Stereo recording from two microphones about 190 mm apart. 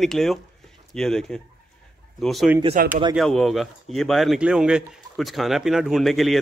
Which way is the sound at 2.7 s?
50° right (ahead or behind).